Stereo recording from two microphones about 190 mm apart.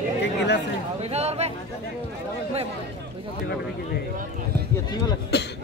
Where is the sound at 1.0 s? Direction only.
35° right (ahead or behind).